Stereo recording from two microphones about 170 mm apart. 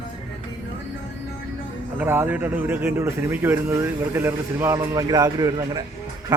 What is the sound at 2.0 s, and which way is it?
Speech, 15° right (ahead or behind).